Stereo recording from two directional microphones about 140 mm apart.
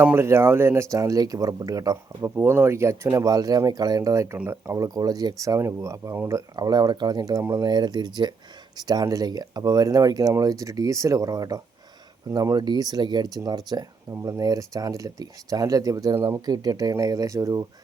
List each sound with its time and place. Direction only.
0.0 s speech: 15° right (ahead or behind)